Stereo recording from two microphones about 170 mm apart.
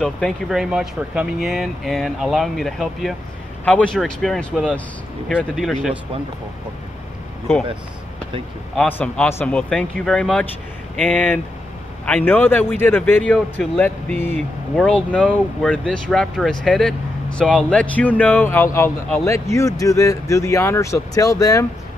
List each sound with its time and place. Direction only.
0.0 s speech: centre (ahead or behind)
8.7 s a man's voice: 10° left (ahead or behind)